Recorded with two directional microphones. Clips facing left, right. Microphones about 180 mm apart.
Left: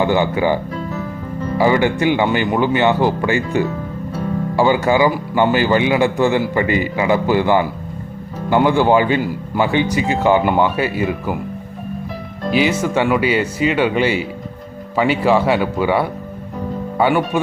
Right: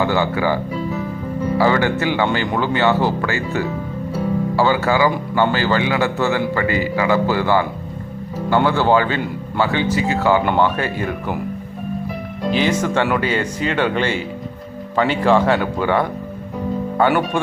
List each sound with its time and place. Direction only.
0.0 s speech: 20° left (ahead or behind)
12.5 s speech: 10° left (ahead or behind)